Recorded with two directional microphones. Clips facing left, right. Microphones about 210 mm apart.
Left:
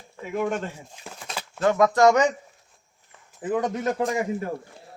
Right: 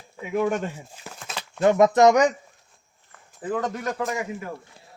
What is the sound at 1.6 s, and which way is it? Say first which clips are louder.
Speech: right 2 dB; 20° right (ahead or behind).